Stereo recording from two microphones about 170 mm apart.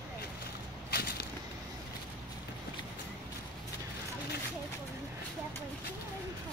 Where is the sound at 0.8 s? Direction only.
70° left (ahead or behind).